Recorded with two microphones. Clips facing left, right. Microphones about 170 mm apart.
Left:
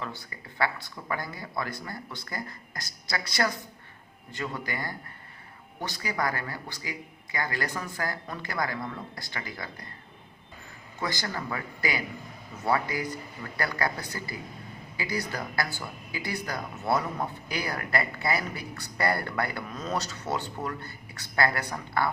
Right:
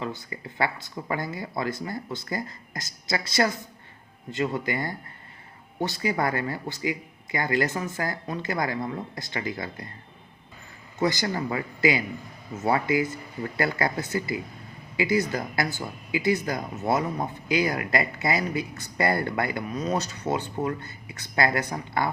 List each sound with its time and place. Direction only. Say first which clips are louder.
0.0 s speech: right 5 dB; 20° right (ahead or behind)
11.0 s speech: right 7 dB; 20° right (ahead or behind)